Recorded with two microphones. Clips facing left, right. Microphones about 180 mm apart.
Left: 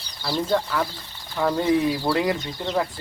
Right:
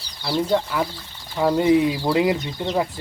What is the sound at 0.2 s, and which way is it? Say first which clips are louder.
Speech: right 2 dB; 10° right (ahead or behind).